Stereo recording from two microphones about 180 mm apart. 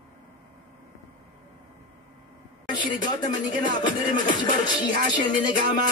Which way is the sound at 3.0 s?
20° left (ahead or behind).